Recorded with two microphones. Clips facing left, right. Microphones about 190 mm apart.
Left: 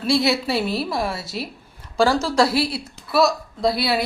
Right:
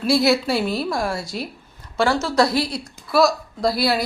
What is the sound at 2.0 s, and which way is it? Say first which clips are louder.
Speech: left 2 dB; 35° left (ahead or behind).